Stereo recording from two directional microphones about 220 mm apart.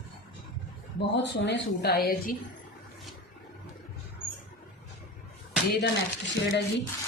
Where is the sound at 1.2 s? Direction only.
50° left (ahead or behind).